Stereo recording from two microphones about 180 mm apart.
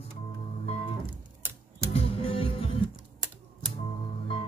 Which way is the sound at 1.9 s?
30° left (ahead or behind).